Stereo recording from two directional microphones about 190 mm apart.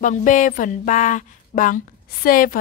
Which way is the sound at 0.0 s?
40° left (ahead or behind).